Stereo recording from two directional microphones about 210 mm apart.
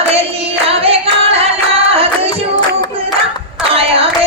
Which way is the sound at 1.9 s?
30° right (ahead or behind).